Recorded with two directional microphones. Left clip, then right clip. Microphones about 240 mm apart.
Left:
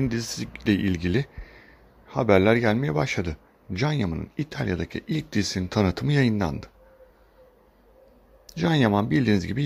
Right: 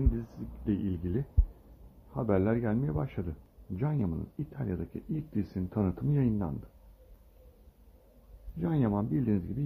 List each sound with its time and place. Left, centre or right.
0.7 s a man's voice: left
8.5 s speech: left